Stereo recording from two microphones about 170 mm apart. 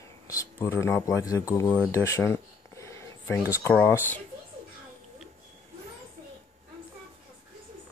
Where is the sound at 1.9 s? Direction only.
20° left (ahead or behind).